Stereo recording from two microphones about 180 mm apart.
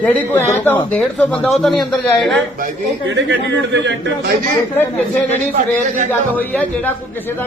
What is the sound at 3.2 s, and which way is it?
Speech, 80° right.